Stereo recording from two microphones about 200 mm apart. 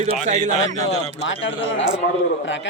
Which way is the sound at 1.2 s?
70° left (ahead or behind).